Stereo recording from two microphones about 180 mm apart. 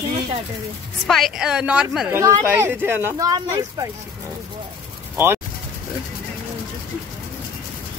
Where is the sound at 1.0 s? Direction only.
Centre (ahead or behind); by 3.9 s 20° right (ahead or behind).